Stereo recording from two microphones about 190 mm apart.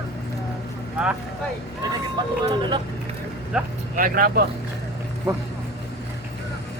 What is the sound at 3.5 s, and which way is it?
Speech, 5° right (ahead or behind).